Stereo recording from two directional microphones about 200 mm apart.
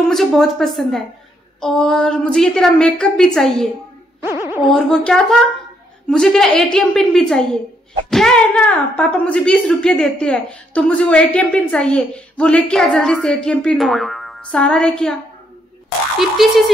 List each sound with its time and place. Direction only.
0.1 s speech: centre (ahead or behind)
4.2 s music: 10° right (ahead or behind)
4.6 s speech: centre (ahead or behind)
16.2 s speech: centre (ahead or behind)